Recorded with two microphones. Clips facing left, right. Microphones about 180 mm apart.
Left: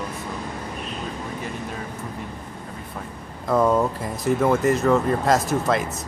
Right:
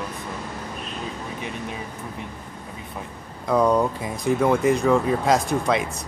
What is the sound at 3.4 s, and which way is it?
Speech, centre (ahead or behind).